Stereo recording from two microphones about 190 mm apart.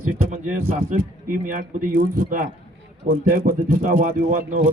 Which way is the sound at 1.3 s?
45° right (ahead or behind).